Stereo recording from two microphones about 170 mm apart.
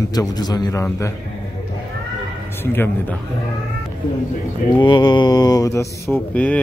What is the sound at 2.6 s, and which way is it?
Speech, 10° left (ahead or behind).